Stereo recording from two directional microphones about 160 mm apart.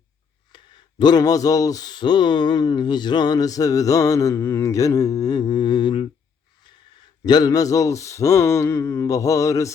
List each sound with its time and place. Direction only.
0.5 s speech: 25° left (ahead or behind)
7.3 s speech: 25° left (ahead or behind)